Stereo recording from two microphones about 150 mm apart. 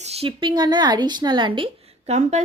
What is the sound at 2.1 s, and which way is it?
Speech, 50° right (ahead or behind).